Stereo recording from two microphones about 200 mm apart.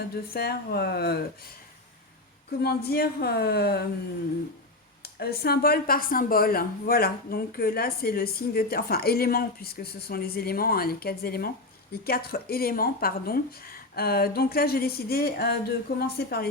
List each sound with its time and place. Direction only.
0.3 s speech: 50° left (ahead or behind)
2.5 s speech: 55° left (ahead or behind)
5.2 s speech: 50° left (ahead or behind)